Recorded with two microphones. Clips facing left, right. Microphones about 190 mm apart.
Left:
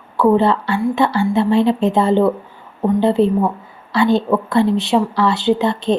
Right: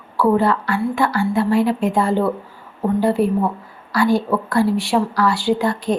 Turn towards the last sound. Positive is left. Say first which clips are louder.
# left 3 dB
turn(degrees=25)  # may be behind; listen again after turning